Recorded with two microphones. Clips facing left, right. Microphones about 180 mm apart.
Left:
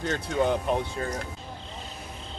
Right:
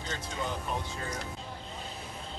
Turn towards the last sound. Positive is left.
turn(degrees=65)  # may be behind; listen again after turning